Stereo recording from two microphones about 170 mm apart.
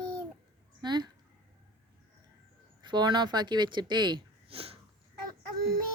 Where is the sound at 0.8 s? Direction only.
25° right (ahead or behind).